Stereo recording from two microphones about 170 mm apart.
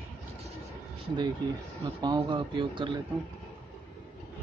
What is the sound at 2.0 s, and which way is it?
Speech, 25° right (ahead or behind).